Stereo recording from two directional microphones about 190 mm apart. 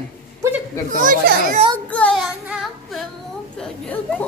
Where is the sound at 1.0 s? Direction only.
45° right (ahead or behind).